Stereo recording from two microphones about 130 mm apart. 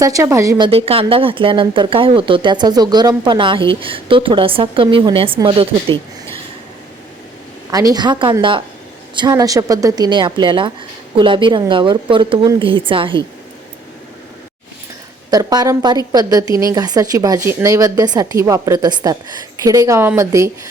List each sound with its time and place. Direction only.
0.0 s speech: 25° right (ahead or behind)
0.6 s speech: 50° right (ahead or behind)
7.7 s a woman's voice: 30° right (ahead or behind)
9.3 s a woman's voice: 25° right (ahead or behind); by 13.2 s 40° right (ahead or behind)
15.3 s speech: 30° right (ahead or behind)